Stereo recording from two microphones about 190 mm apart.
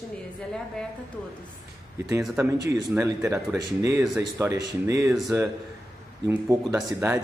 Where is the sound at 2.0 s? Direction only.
15° right (ahead or behind).